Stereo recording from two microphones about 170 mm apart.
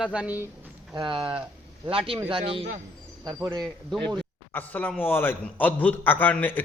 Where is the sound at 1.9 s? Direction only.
30° right (ahead or behind).